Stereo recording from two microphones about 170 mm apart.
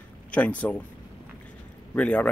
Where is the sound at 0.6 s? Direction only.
5° left (ahead or behind).